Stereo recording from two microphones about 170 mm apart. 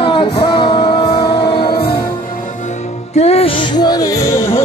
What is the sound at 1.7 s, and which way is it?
Music, 65° left (ahead or behind).